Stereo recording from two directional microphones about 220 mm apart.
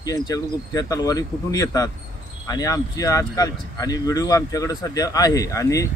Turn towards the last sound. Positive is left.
turn(degrees=15)  # may be behind; listen again after turning